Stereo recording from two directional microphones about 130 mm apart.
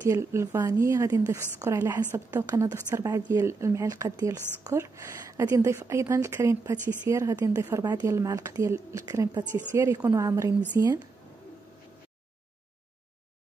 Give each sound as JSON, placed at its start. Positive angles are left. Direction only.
{"t": 0.0, "sound": "a woman's voice", "side_deg": -25}
{"t": 9.5, "sound": "a woman's voice", "side_deg": 15}
{"t": 9.8, "sound": "a woman's voice", "side_deg": -25}